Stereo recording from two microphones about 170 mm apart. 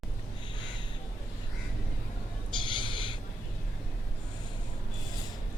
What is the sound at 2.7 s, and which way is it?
Owl, 30° left (ahead or behind).